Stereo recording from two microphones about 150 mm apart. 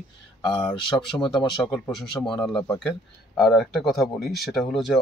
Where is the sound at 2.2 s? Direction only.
5° left (ahead or behind).